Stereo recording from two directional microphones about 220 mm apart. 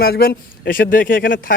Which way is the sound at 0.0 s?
45° left (ahead or behind).